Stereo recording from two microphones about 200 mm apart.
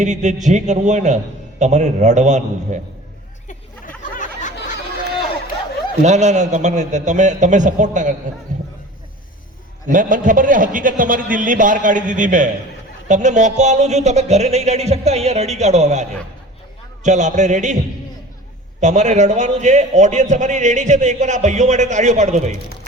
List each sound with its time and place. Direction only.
0.0 s a man's voice: 35° right (ahead or behind)
3.8 s a sound: 40° left (ahead or behind)
6.0 s a man's voice: 35° right (ahead or behind)
9.8 s a man's voice: 40° right (ahead or behind)
18.8 s a man's voice: 35° right (ahead or behind)